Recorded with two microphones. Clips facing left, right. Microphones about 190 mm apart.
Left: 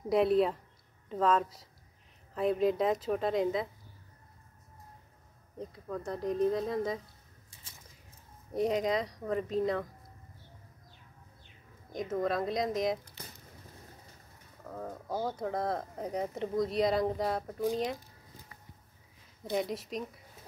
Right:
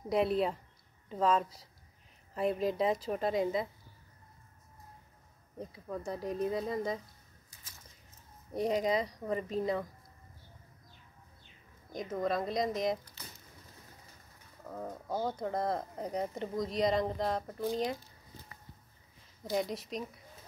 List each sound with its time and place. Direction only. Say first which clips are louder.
0.1 s speech: left 4 dB; centre (ahead or behind)
5.6 s speech: left 1 dB; 5° right (ahead or behind)
8.5 s speech: left 1 dB; centre (ahead or behind)
11.9 s speech: left 2 dB; centre (ahead or behind)
14.7 s speech: even; centre (ahead or behind)
19.5 s speech: left 1 dB; centre (ahead or behind)